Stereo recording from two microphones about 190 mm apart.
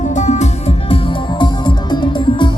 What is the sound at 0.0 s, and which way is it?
Music, 40° left (ahead or behind).